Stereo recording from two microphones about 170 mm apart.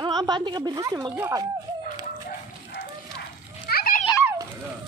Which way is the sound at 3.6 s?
60° left (ahead or behind).